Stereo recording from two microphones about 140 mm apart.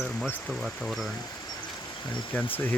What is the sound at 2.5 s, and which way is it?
Speech, 10° left (ahead or behind).